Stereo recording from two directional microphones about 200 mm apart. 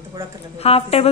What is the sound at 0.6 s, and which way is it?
Speech, 30° left (ahead or behind).